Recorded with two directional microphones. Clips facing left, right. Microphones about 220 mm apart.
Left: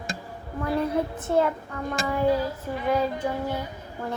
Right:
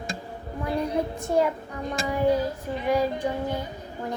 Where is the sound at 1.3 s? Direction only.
15° right (ahead or behind).